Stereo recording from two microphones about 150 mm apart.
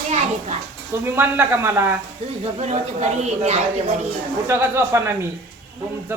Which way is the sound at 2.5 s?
45° right (ahead or behind).